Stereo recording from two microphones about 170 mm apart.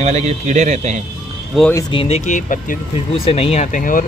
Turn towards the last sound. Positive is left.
turn(degrees=55)  # may be behind; listen again after turning